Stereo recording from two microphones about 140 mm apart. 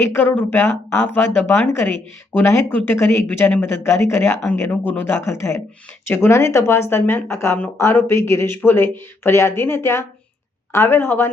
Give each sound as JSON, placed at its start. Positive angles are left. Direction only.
{"t": 0.0, "sound": "speech", "side_deg": 15}